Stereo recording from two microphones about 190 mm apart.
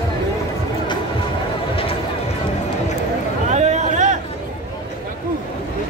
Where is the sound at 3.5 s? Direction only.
35° right (ahead or behind).